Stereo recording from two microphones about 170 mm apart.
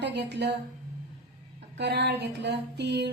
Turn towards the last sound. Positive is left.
turn(degrees=-90)